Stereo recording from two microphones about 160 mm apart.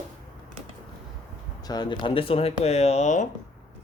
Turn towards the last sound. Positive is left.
turn(degrees=50)  # may be behind; listen again after turning